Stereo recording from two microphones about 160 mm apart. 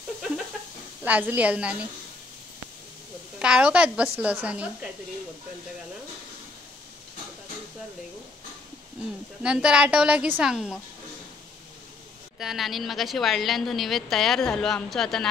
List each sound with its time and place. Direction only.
1.0 s a woman's voice: 10° right (ahead or behind)
3.3 s a woman's voice: 5° right (ahead or behind)
9.4 s a woman's voice: 5° right (ahead or behind)
12.4 s a woman's voice: centre (ahead or behind)